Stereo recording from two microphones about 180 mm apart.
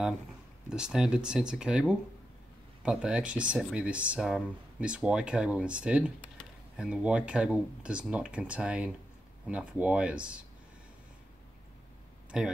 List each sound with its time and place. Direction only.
0.7 s speech: 5° right (ahead or behind)
12.3 s speech: 5° right (ahead or behind)